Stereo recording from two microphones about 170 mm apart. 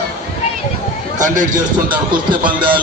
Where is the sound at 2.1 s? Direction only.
25° right (ahead or behind).